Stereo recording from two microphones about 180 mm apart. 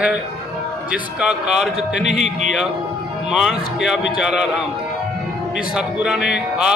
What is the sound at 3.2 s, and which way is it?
Speech, centre (ahead or behind).